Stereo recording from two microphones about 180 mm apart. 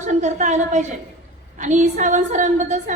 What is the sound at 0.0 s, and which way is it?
A woman's voice, 40° right (ahead or behind).